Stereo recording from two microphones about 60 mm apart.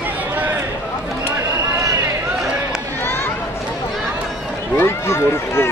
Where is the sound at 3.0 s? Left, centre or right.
Left.